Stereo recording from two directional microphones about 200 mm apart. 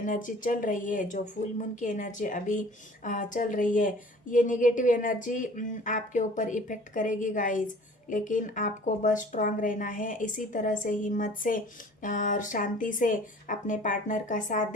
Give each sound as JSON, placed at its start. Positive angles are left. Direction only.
{"t": 0.0, "sound": "speech", "side_deg": 40}